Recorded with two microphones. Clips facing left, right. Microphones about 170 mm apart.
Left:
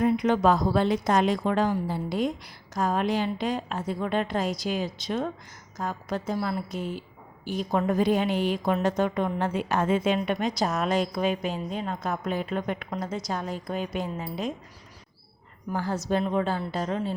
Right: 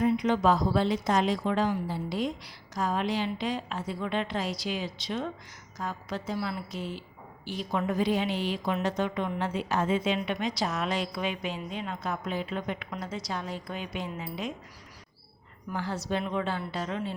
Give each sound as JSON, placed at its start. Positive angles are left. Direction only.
{"t": 0.0, "sound": "a woman's voice", "side_deg": 55}
{"t": 15.7, "sound": "a woman's voice", "side_deg": 45}